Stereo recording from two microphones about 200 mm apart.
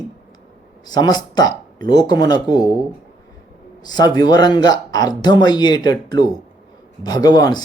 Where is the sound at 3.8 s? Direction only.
20° left (ahead or behind).